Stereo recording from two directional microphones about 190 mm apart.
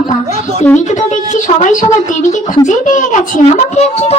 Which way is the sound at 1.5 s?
40° left (ahead or behind).